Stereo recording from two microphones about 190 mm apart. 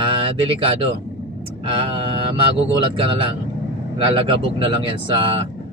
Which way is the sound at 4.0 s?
30° right (ahead or behind).